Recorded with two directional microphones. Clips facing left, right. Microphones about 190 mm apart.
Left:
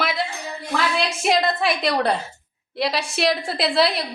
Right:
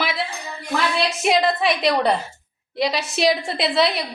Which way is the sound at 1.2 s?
Centre (ahead or behind).